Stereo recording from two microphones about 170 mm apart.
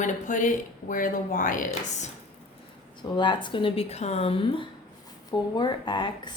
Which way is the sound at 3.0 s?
25° left (ahead or behind).